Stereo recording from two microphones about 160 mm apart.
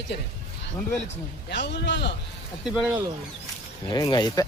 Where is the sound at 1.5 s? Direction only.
90° left.